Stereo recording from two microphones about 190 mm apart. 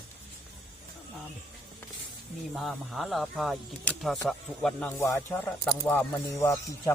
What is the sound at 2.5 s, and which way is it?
Speech, centre (ahead or behind).